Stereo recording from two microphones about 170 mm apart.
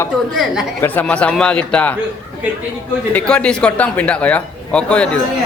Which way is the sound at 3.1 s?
5° left (ahead or behind).